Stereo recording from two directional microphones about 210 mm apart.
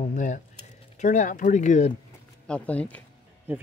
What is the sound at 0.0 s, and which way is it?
Typing, 35° left (ahead or behind).